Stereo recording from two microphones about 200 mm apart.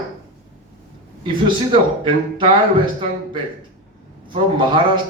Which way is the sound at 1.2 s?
25° right (ahead or behind).